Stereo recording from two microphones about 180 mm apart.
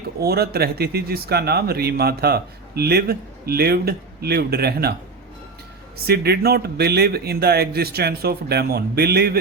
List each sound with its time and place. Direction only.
0.2 s speech: 60° right (ahead or behind)
6.1 s speech: 60° right (ahead or behind)